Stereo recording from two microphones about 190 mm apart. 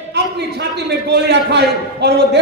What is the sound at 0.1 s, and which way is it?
A man's voice, 60° right (ahead or behind).